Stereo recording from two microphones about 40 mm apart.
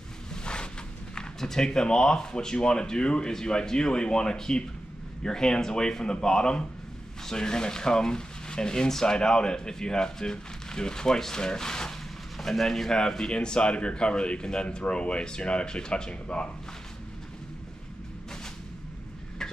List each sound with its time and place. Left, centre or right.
0.3 s a sound: left
1.1 s speech: centre
12.9 s speech: centre